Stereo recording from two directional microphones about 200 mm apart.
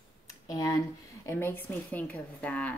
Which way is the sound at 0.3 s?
15° left (ahead or behind).